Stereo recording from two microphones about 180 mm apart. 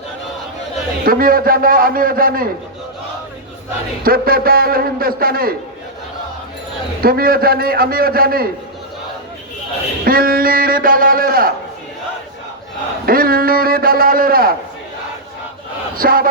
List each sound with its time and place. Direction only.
1.0 s speech: 55° right (ahead or behind)
4.0 s a man's voice: 55° right (ahead or behind)
7.0 s a man's voice: 55° right (ahead or behind)
10.0 s speech: 55° right (ahead or behind)
13.1 s a man's voice: 55° right (ahead or behind)
16.0 s speech: 55° right (ahead or behind)